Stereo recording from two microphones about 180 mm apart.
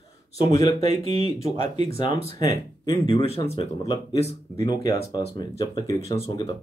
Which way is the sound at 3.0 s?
30° left (ahead or behind).